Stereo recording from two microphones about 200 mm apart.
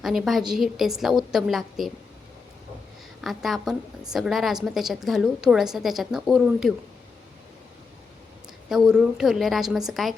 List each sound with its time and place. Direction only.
0.0 s a woman's voice: centre (ahead or behind)
3.2 s a woman's voice: centre (ahead or behind)
8.7 s a woman's voice: 5° right (ahead or behind)